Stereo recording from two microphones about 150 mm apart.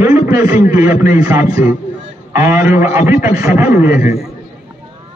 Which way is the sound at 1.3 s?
80° left.